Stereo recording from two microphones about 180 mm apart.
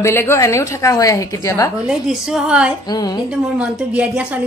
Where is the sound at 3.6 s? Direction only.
5° right (ahead or behind).